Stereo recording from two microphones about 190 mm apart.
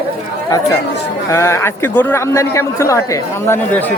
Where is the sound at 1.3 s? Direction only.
15° left (ahead or behind).